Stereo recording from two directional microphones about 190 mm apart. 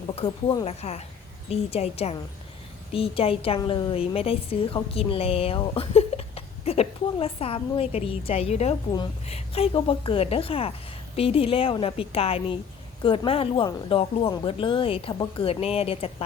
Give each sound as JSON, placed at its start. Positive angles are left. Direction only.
{"t": 0.2, "sound": "a woman's voice", "side_deg": 30}